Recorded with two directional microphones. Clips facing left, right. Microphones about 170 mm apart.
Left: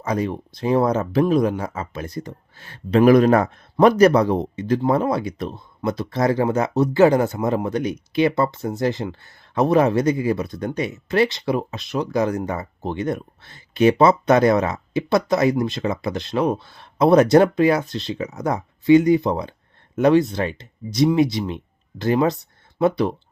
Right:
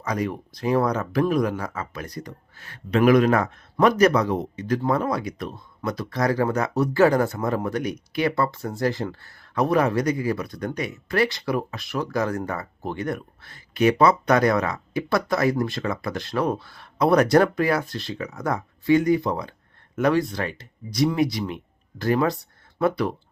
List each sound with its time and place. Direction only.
0.0 s speech: 25° left (ahead or behind)